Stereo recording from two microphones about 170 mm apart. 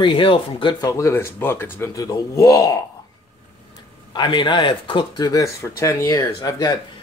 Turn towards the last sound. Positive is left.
turn(degrees=25)  # may be behind; listen again after turning